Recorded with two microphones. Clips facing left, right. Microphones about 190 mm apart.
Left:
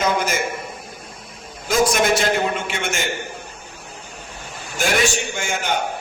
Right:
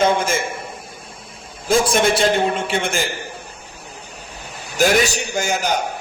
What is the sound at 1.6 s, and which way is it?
A man's voice, 30° right (ahead or behind).